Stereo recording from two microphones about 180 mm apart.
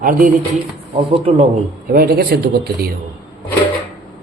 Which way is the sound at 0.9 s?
30° right (ahead or behind).